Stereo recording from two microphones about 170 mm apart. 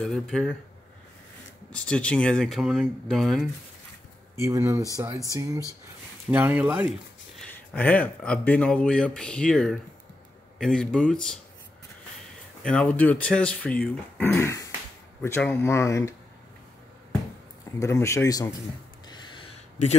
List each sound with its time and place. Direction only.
0.0 s speech: 5° left (ahead or behind)
1.7 s speech: 5° left (ahead or behind)
4.4 s speech: 15° right (ahead or behind)
7.7 s speech: 10° left (ahead or behind)
12.6 s speech: 5° left (ahead or behind)
17.7 s speech: 15° left (ahead or behind)
19.0 s a sound: 25° left (ahead or behind)